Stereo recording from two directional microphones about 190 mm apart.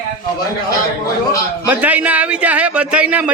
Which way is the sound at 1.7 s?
10° right (ahead or behind).